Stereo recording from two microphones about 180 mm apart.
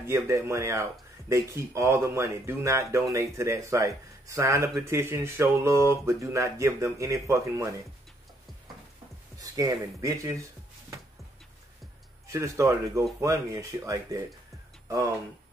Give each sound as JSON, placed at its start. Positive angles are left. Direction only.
{"t": 0.0, "sound": "speech", "side_deg": -15}
{"t": 9.4, "sound": "speech", "side_deg": -20}
{"t": 12.3, "sound": "speech", "side_deg": -15}